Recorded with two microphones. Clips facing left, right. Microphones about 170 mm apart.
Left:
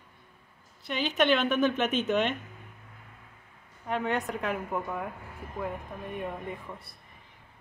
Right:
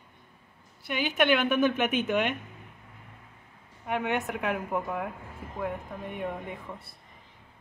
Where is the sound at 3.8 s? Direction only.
15° right (ahead or behind).